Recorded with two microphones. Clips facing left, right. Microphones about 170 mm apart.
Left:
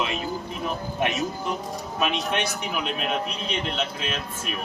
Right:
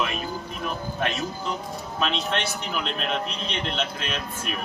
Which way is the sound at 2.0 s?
10° left (ahead or behind).